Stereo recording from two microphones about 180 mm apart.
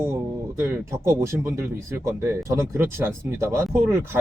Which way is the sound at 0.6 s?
15° right (ahead or behind).